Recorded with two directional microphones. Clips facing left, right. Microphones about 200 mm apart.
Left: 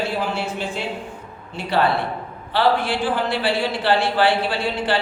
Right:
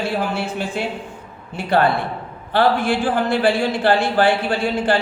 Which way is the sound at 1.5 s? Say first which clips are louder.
Right 2 dB; 50° right (ahead or behind).